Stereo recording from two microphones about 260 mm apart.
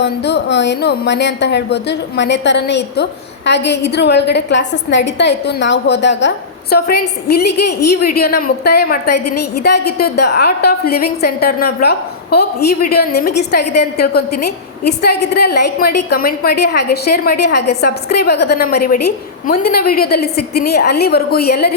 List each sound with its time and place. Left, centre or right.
0.0 s speech: left